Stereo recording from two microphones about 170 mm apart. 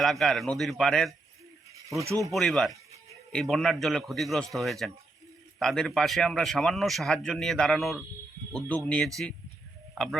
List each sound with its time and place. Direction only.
0.0 s speech: centre (ahead or behind)
2.0 s speech: 20° right (ahead or behind)
2.3 s speech: centre (ahead or behind)